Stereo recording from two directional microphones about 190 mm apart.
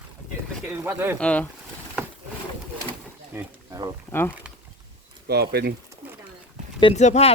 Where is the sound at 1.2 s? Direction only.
5° left (ahead or behind).